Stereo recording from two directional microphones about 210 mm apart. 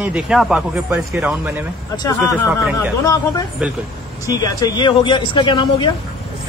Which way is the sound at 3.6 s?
5° right (ahead or behind).